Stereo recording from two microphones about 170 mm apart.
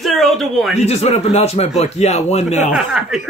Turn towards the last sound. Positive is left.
turn(degrees=-5)  # may be behind; listen again after turning